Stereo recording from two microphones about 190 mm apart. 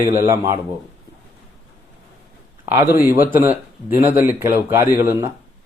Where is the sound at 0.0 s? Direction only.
10° right (ahead or behind).